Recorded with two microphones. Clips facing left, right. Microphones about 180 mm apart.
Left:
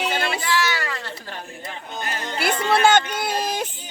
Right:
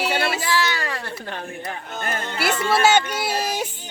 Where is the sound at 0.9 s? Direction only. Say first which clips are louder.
Right 3 dB; 50° right (ahead or behind).